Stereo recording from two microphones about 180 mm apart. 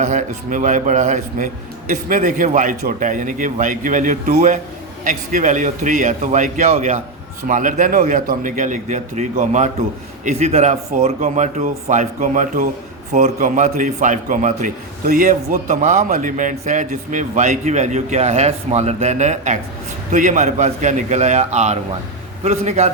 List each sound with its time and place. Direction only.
0.0 s a man's voice: 45° right (ahead or behind)
7.4 s a man's voice: 45° right (ahead or behind)